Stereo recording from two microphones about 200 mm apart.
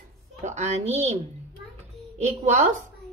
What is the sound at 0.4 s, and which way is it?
Speech, 35° right (ahead or behind).